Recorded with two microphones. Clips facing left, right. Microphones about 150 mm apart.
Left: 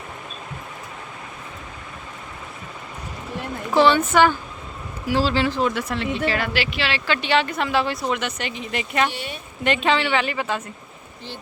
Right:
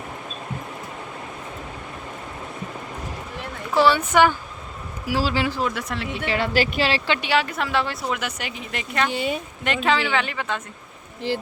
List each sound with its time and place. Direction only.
3.8 s speech: 10° right (ahead or behind)
5.6 s speech: centre (ahead or behind)
6.2 s speech: 25° right (ahead or behind)
6.5 s speech: 40° right (ahead or behind)
7.1 s speech: 10° right (ahead or behind)